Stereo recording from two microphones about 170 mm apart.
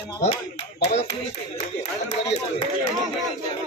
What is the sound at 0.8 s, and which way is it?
Speech, 40° left (ahead or behind).